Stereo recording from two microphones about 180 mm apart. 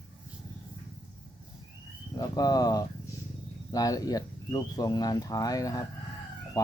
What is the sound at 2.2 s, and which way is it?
Speech, 20° left (ahead or behind).